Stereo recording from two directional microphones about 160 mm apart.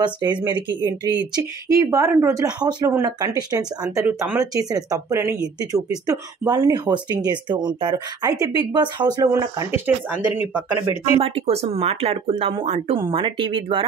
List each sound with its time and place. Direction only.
0.0 s speech: 30° right (ahead or behind); by 10.6 s 10° right (ahead or behind)
11.1 s speech: 35° right (ahead or behind)